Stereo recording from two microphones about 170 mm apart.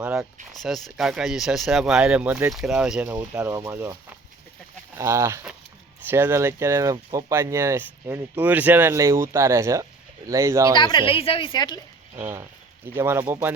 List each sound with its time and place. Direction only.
0.0 s speech: 5° right (ahead or behind)
4.9 s speech: 15° right (ahead or behind)
10.8 s a woman's voice: 25° left (ahead or behind)
12.1 s speech: 20° right (ahead or behind)